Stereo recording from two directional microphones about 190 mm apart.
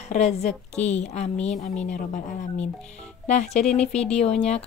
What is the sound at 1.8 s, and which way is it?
A woman's voice, 40° left (ahead or behind).